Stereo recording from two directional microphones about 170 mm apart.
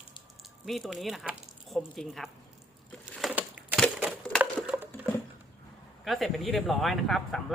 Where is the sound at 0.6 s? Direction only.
Centre (ahead or behind).